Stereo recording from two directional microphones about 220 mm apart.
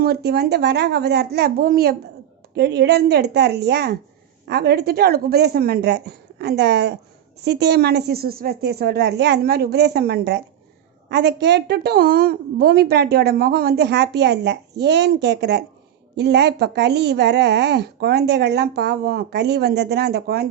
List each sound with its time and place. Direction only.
0.0 s a woman's voice: 45° right (ahead or behind)